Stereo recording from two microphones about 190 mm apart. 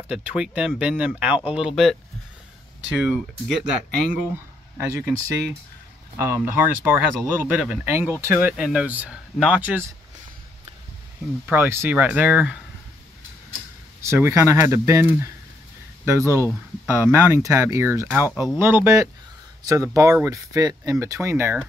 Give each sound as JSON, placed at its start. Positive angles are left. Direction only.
{"t": 0.1, "sound": "speech", "side_deg": -5}
{"t": 3.0, "sound": "speech", "side_deg": -5}
{"t": 4.7, "sound": "speech", "side_deg": -10}
{"t": 6.1, "sound": "speech", "side_deg": -10}
{"t": 11.4, "sound": "speech", "side_deg": -10}
{"t": 14.0, "sound": "speech", "side_deg": -15}